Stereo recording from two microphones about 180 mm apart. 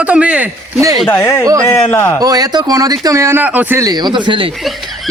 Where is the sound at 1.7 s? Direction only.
15° left (ahead or behind).